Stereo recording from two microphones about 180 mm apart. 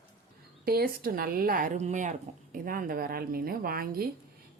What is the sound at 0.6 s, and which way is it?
A woman's voice, 60° right (ahead or behind).